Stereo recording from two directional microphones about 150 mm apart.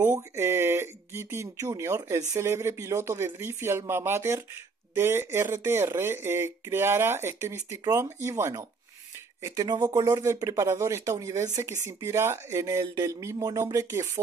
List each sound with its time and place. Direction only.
0.4 s speech: 15° right (ahead or behind)